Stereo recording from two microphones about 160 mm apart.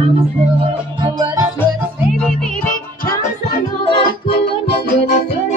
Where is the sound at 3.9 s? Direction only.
30° left (ahead or behind).